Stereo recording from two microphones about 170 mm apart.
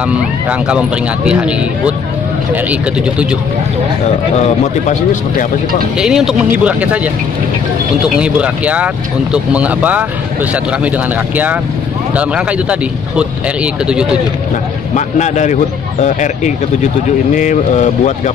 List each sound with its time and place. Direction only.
0.1 s speech: 5° right (ahead or behind)
5.9 s speech: 5° right (ahead or behind)
8.2 s speech: 5° right (ahead or behind)
12.2 s speech: 5° right (ahead or behind)
15.0 s speech: 45° left (ahead or behind)